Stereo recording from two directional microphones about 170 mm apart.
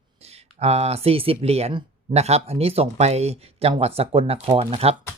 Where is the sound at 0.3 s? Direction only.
40° right (ahead or behind).